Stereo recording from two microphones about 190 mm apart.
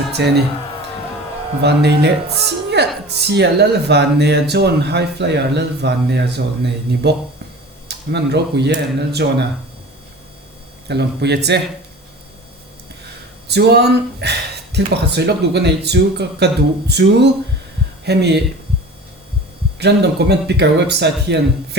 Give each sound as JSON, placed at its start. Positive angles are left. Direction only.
{"t": 0.1, "sound": "speech", "side_deg": -60}
{"t": 1.6, "sound": "speech", "side_deg": -60}
{"t": 10.8, "sound": "speech", "side_deg": -65}
{"t": 13.5, "sound": "speech", "side_deg": -60}
{"t": 19.8, "sound": "speech", "side_deg": -60}